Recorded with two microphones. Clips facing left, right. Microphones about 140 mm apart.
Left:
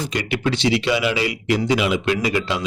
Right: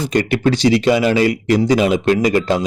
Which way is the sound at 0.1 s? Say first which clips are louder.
Right 10 dB; 45° right (ahead or behind).